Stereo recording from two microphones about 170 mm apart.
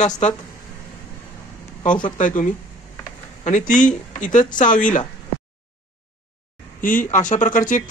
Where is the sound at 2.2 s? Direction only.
50° left (ahead or behind).